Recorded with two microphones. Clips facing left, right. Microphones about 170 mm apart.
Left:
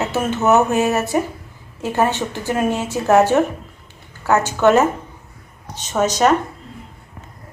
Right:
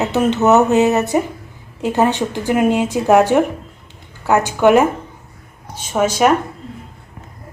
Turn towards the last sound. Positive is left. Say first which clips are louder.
# right 2 dB
turn(degrees=-10)  # may be behind; listen again after turning